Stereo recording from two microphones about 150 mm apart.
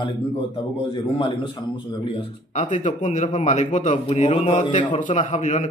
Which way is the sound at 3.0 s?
55° left (ahead or behind).